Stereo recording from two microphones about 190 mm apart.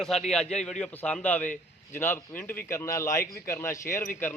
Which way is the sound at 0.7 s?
5° left (ahead or behind).